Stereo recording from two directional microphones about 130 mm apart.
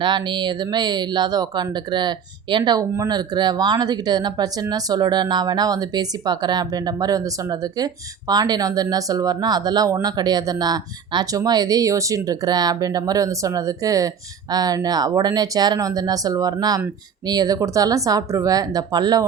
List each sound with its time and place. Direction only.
0.0 s speech: 35° right (ahead or behind)